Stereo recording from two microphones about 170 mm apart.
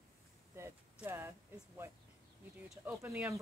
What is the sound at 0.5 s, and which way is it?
Speech, 15° right (ahead or behind).